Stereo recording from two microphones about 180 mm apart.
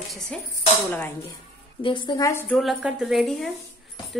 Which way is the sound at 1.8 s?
25° left (ahead or behind).